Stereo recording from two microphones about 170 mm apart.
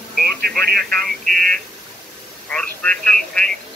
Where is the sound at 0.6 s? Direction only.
65° right (ahead or behind).